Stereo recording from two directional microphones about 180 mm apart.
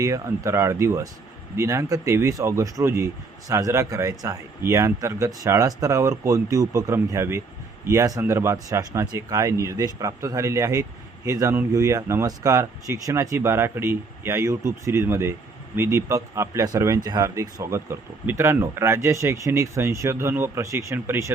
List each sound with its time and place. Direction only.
0.0 s speech: 15° right (ahead or behind)